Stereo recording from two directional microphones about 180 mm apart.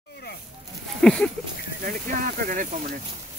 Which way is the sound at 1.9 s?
45° right (ahead or behind).